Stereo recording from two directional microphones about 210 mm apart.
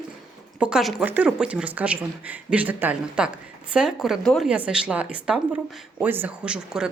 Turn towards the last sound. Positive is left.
turn(degrees=-5)  # may be behind; listen again after turning